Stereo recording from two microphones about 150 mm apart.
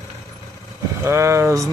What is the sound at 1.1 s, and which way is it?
Speech, 20° right (ahead or behind).